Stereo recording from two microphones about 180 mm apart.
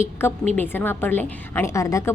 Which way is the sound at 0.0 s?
15° left (ahead or behind).